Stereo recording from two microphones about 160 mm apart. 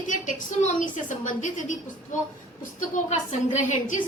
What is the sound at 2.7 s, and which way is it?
A woman's voice, 50° left (ahead or behind).